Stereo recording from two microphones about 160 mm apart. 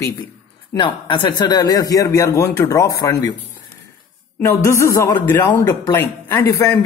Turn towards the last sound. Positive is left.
turn(degrees=15)  # may be behind; listen again after turning